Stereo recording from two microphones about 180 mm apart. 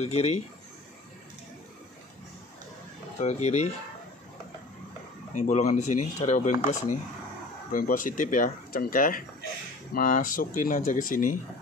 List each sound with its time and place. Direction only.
0.0 s speech: 35° left (ahead or behind)
3.2 s speech: 40° left (ahead or behind)
5.3 s speech: 40° left (ahead or behind)